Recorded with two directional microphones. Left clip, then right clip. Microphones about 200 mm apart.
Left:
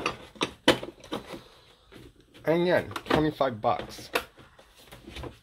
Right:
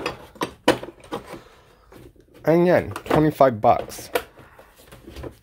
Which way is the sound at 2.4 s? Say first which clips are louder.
Right 7 dB; 45° right (ahead or behind).